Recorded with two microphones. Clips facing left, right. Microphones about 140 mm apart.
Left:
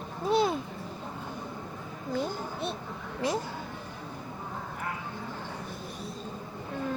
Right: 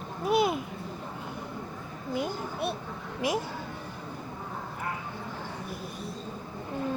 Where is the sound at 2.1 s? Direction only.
10° right (ahead or behind).